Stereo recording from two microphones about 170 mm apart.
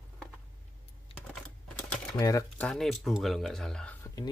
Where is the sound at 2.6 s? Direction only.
Centre (ahead or behind).